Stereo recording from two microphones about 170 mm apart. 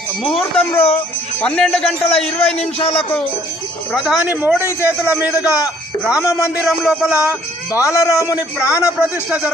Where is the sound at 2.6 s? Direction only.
35° left (ahead or behind).